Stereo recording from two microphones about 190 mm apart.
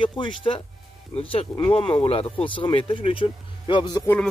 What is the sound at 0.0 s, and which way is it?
Speech, 25° left (ahead or behind).